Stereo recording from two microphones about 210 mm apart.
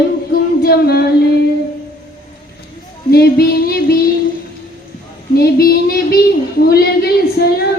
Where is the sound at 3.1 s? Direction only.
50° left (ahead or behind).